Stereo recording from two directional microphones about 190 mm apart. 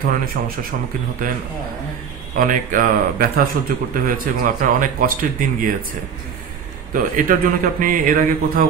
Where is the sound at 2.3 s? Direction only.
45° right (ahead or behind).